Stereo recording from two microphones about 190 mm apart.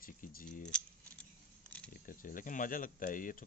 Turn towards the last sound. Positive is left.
turn(degrees=45)  # may be behind; listen again after turning